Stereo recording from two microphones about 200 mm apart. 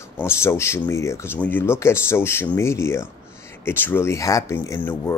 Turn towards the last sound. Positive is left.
turn(degrees=10)  # may be behind; listen again after turning